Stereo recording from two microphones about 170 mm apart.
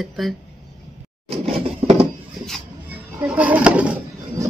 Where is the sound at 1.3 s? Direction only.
35° right (ahead or behind).